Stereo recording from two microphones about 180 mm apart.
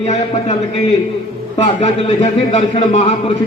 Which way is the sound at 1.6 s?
35° left (ahead or behind).